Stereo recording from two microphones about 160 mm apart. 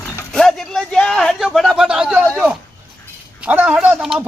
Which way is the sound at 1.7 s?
5° right (ahead or behind).